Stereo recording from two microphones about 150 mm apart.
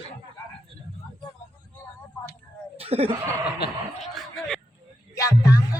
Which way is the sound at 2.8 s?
40° right (ahead or behind).